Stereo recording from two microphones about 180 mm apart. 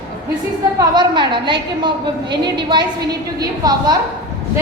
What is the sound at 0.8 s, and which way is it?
A woman's voice, 25° right (ahead or behind).